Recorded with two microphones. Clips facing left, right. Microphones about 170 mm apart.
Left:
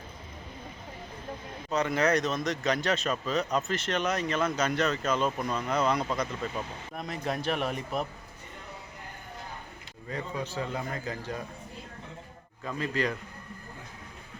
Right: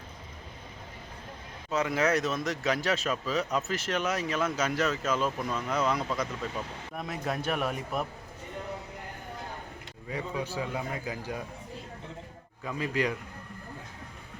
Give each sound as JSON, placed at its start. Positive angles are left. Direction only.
{"t": 1.7, "sound": "speech", "side_deg": -5}
{"t": 10.1, "sound": "a man's voice", "side_deg": -10}
{"t": 12.6, "sound": "a man's voice", "side_deg": -10}